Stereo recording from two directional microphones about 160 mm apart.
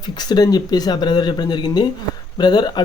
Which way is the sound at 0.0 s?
25° left (ahead or behind).